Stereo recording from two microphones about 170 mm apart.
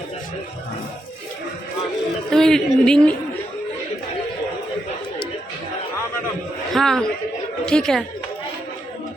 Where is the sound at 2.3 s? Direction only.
5° left (ahead or behind).